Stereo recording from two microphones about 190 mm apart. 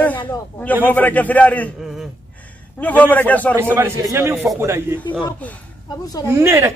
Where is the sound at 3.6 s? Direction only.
10° right (ahead or behind).